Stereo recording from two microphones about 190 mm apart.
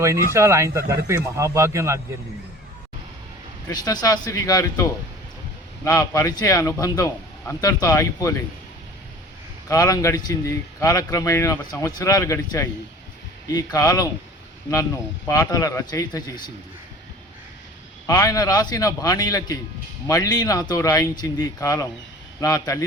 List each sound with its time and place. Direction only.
0.0 s speech: 15° right (ahead or behind)
3.7 s speech: 20° left (ahead or behind)
9.6 s speech: 20° left (ahead or behind)
15.3 s speech: 20° left (ahead or behind)
18.0 s speech: 20° left (ahead or behind)